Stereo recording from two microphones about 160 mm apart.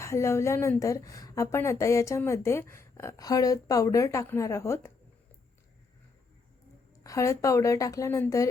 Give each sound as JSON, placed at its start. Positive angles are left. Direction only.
{"t": 0.0, "sound": "a woman's voice", "side_deg": 15}
{"t": 7.0, "sound": "a woman's voice", "side_deg": 20}